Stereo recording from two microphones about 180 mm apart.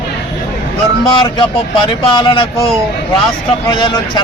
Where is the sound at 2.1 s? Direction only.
25° left (ahead or behind).